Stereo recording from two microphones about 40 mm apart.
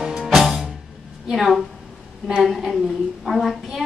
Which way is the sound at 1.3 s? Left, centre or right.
Centre.